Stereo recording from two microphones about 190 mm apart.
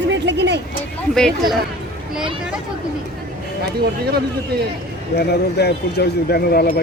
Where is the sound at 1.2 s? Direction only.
Centre (ahead or behind).